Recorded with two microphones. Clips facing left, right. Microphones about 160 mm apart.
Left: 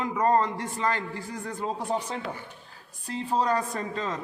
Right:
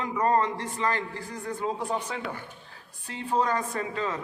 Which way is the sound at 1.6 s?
35° left (ahead or behind).